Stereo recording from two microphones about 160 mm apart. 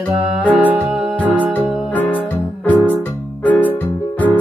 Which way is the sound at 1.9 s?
10° left (ahead or behind).